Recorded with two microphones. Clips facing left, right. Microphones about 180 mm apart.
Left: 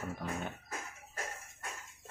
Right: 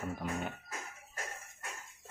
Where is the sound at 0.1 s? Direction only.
5° right (ahead or behind).